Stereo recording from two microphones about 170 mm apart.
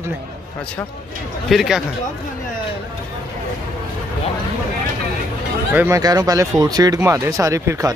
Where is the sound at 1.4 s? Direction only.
Centre (ahead or behind).